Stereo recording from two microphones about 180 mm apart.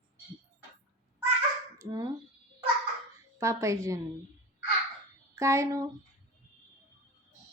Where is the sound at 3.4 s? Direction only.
15° right (ahead or behind).